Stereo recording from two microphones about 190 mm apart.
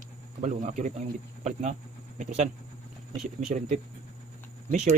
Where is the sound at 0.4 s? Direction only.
40° right (ahead or behind).